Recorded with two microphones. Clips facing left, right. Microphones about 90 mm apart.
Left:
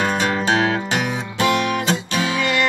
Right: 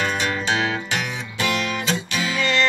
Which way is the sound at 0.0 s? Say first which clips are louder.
Left 4 dB; 40° left (ahead or behind).